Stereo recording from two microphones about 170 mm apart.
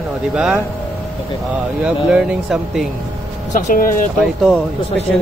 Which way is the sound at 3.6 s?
50° left (ahead or behind).